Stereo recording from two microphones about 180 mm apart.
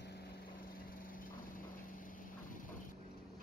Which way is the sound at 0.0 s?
60° left (ahead or behind).